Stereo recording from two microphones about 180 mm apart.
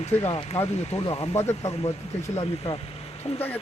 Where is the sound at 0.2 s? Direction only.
35° left (ahead or behind).